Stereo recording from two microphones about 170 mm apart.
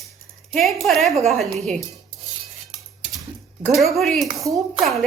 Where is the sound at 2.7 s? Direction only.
Centre (ahead or behind).